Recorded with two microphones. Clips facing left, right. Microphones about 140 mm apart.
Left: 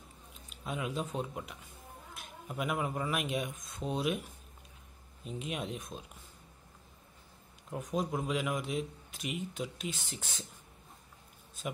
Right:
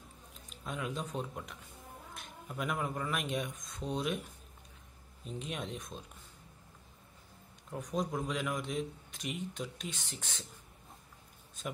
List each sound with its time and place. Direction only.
0.5 s speech: 5° left (ahead or behind)
5.2 s speech: 5° left (ahead or behind)
7.7 s a man's voice: 5° left (ahead or behind)